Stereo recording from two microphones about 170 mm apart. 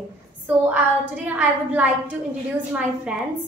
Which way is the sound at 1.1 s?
10° right (ahead or behind).